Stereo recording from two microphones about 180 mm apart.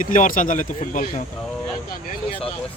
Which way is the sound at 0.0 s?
45° left (ahead or behind).